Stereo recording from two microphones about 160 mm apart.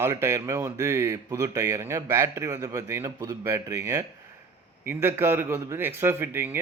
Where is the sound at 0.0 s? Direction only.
15° right (ahead or behind).